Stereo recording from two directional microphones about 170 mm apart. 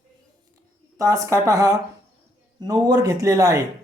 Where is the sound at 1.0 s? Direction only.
20° right (ahead or behind).